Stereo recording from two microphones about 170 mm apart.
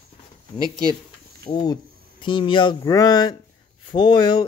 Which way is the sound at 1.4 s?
25° left (ahead or behind).